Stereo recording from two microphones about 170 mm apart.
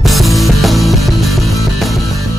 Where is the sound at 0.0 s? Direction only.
Centre (ahead or behind).